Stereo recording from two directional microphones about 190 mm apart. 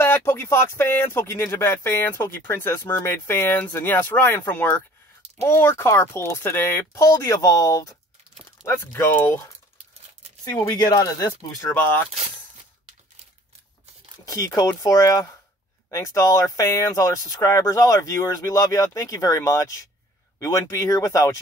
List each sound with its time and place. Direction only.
0.0 s speech: 10° left (ahead or behind)
10.6 s speech: 20° left (ahead or behind)
14.2 s speech: 20° left (ahead or behind)